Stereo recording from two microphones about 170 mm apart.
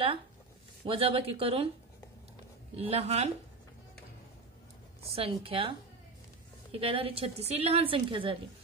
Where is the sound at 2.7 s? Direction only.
35° right (ahead or behind).